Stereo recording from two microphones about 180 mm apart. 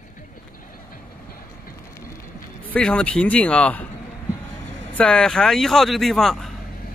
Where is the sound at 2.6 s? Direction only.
5° left (ahead or behind).